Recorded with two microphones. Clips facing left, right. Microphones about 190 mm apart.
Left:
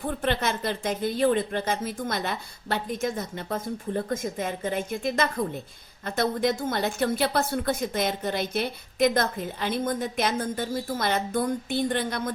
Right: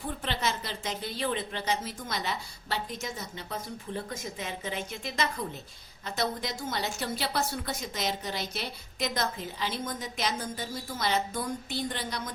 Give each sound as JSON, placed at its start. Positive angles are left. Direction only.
{"t": 0.0, "sound": "a woman's voice", "side_deg": 55}